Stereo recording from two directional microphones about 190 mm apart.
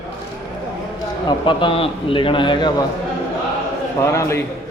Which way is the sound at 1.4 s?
25° left (ahead or behind).